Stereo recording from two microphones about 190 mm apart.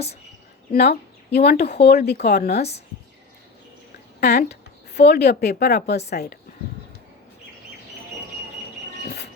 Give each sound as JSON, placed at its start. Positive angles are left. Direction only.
{"t": 0.7, "sound": "speech", "side_deg": 60}
{"t": 4.2, "sound": "speech", "side_deg": 60}
{"t": 9.0, "sound": "a sound", "side_deg": 55}